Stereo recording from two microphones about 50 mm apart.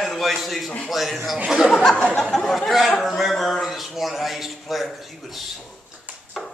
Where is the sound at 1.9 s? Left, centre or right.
Centre.